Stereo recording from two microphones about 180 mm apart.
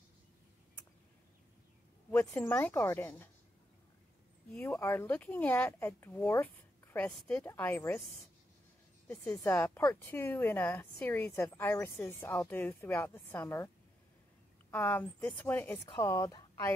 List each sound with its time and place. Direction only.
2.0 s speech: 15° left (ahead or behind)
4.5 s speech: 5° left (ahead or behind)
9.0 s speech: 10° left (ahead or behind)
14.7 s speech: 10° left (ahead or behind)